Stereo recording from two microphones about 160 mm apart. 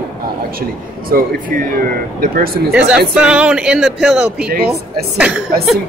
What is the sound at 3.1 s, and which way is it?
Speech, 5° right (ahead or behind).